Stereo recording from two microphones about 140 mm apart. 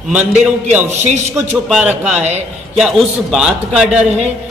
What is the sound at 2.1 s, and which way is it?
Speech, 50° right (ahead or behind).